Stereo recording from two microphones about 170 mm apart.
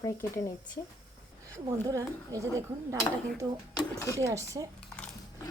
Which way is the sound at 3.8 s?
20° left (ahead or behind).